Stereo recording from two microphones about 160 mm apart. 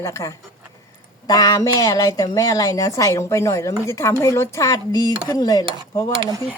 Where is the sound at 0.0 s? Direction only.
20° left (ahead or behind).